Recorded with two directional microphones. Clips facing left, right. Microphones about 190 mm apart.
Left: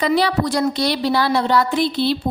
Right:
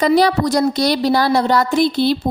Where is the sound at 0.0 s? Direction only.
40° right (ahead or behind).